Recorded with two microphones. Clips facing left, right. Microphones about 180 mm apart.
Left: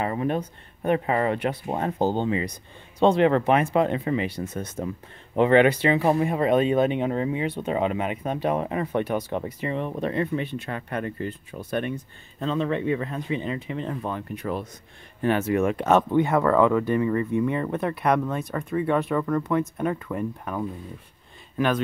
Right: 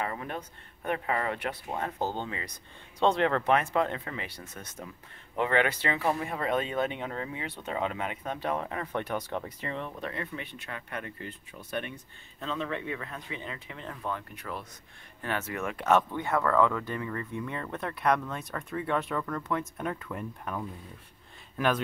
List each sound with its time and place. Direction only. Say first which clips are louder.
0.0 s speech: left 9 dB; 25° left (ahead or behind)
4.7 s speech: left 12 dB; 40° left (ahead or behind)
5.4 s speech: left 9 dB; 20° left (ahead or behind)
9.8 s speech: left 11 dB; 25° left (ahead or behind); by 11.9 s 45° left (ahead or behind)
12.4 s speech: left 8 dB; 35° left (ahead or behind)
16.2 s speech: left 7 dB; 15° left (ahead or behind); by 21.8 s centre (ahead or behind)